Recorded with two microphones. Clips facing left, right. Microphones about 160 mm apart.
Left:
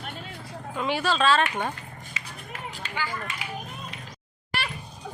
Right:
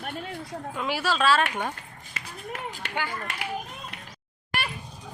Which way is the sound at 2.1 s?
65° right (ahead or behind).